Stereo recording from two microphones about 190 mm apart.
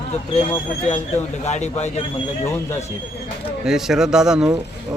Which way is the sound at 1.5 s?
35° left (ahead or behind).